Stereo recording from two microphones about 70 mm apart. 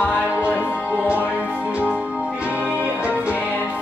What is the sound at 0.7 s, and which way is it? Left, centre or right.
Music, centre.